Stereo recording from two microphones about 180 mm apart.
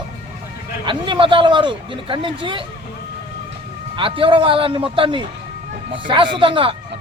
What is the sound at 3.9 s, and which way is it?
A man's voice, 30° right (ahead or behind).